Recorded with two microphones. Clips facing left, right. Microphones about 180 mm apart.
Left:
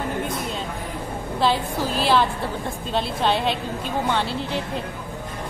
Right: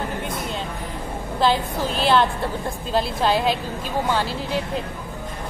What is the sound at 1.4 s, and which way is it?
A woman's voice, centre (ahead or behind).